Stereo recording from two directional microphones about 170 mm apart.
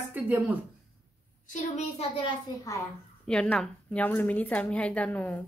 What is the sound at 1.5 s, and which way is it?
Speech, 40° left (ahead or behind).